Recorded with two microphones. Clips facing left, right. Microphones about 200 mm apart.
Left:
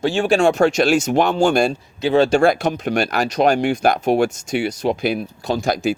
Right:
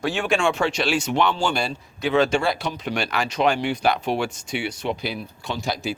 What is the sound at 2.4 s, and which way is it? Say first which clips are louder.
Speech: left 8 dB; 50° left (ahead or behind).